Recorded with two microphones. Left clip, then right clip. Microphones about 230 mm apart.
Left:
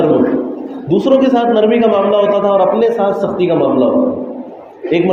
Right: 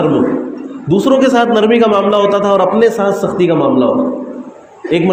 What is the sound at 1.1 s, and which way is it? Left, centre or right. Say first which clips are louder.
A man's voice: right 1 dB; right.